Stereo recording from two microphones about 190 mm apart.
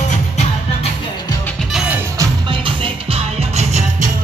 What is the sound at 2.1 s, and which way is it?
Music, 25° right (ahead or behind).